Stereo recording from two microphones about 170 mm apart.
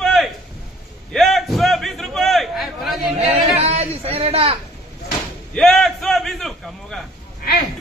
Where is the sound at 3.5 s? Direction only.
35° right (ahead or behind).